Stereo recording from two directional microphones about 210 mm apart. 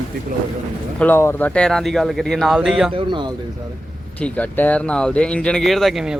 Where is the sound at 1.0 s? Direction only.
10° left (ahead or behind).